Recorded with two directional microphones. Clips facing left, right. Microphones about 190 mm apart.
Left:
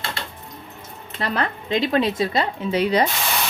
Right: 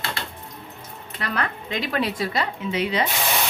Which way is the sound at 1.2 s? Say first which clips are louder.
Left 3 dB; 30° left (ahead or behind).